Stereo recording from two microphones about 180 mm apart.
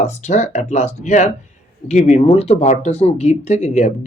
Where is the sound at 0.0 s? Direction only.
40° left (ahead or behind).